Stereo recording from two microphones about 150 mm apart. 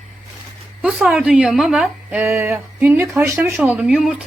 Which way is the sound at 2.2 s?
15° right (ahead or behind).